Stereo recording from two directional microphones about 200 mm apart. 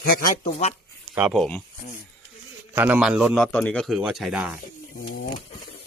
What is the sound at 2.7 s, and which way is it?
A man's voice, 10° right (ahead or behind).